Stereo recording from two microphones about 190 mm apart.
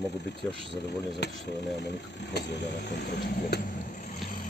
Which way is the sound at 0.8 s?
60° left (ahead or behind).